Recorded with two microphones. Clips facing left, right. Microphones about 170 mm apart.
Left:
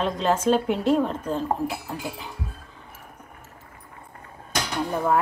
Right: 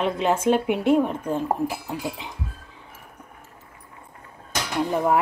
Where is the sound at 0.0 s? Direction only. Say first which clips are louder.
Right 1 dB; 15° right (ahead or behind).